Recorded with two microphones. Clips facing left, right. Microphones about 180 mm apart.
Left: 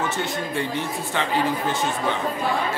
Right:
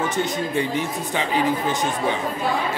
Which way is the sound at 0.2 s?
15° right (ahead or behind).